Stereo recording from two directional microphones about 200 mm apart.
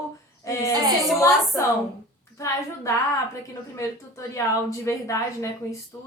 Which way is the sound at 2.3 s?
15° left (ahead or behind).